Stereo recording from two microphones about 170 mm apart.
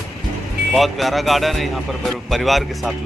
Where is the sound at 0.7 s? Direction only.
Centre (ahead or behind).